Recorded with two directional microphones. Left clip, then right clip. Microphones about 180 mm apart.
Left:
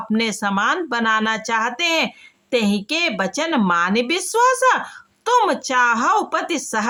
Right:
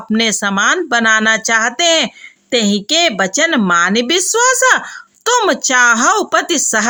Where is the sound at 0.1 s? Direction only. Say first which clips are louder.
Right 7 dB; 20° right (ahead or behind).